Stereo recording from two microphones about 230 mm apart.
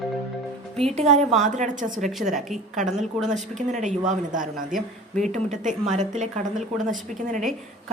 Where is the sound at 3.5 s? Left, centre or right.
Right.